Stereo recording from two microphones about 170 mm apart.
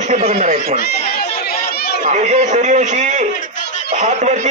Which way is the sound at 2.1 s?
45° right (ahead or behind).